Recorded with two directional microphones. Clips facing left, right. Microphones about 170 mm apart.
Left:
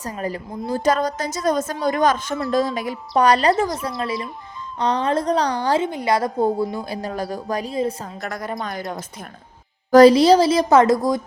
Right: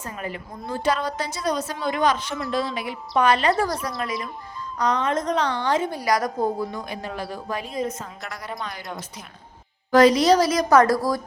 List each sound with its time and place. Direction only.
0.0 s a woman's voice: 35° left (ahead or behind)
5.8 s a woman's voice: 25° left (ahead or behind); by 9.2 s 50° left (ahead or behind)
9.9 s a woman's voice: 35° left (ahead or behind)